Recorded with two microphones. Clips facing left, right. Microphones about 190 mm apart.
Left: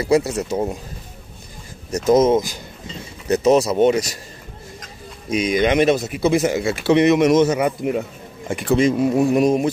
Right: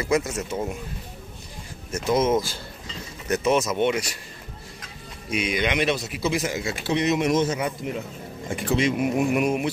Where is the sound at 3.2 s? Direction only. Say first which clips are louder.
Left 7 dB; 35° left (ahead or behind).